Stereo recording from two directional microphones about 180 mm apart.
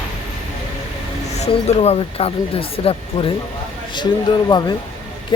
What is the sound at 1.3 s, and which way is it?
Speech, 40° left (ahead or behind).